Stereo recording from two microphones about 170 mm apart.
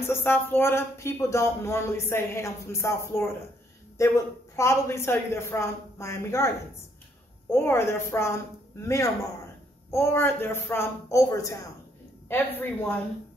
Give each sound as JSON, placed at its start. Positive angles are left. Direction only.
{"t": 0.0, "sound": "speech", "side_deg": 15}